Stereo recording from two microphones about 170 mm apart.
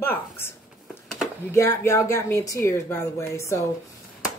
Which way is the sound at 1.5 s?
15° left (ahead or behind).